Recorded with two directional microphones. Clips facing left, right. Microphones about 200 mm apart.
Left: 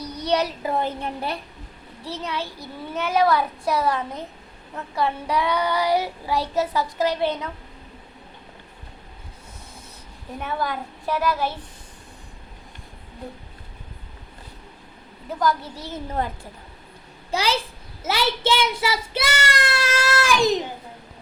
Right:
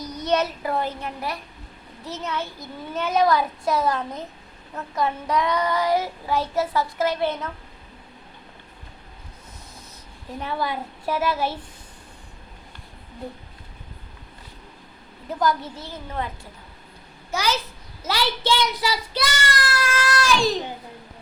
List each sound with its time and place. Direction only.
0.0 s child singing: 35° left (ahead or behind)
0.3 s a child's voice: 10° left (ahead or behind)
0.7 s a woman's voice: 25° left (ahead or behind)
2.0 s a child's voice: 10° left (ahead or behind)
5.2 s a child's voice: 10° left (ahead or behind)
10.5 s a woman's voice: 5° right (ahead or behind)
16.1 s a woman's voice: 45° left (ahead or behind)
17.3 s a child's voice: 30° left (ahead or behind)